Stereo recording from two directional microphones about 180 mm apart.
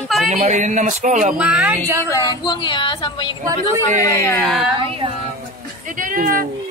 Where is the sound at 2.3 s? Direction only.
25° left (ahead or behind).